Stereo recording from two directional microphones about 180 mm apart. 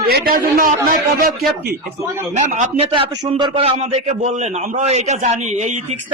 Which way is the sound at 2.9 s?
25° right (ahead or behind).